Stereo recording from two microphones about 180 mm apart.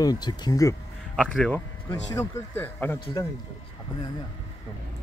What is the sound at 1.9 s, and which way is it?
Speech, 15° left (ahead or behind).